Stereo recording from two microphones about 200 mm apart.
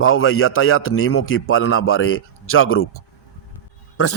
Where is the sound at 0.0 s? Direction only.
90° left.